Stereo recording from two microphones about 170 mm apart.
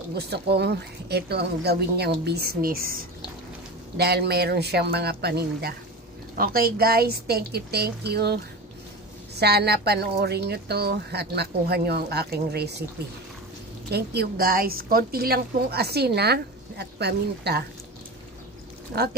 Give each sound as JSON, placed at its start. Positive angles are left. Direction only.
{"t": 0.1, "sound": "a woman's voice", "side_deg": -70}
{"t": 3.9, "sound": "a woman's voice", "side_deg": -70}
{"t": 13.8, "sound": "a woman's voice", "side_deg": -70}